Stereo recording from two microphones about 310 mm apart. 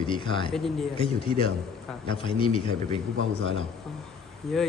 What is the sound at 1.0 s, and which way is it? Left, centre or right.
A man's voice, centre.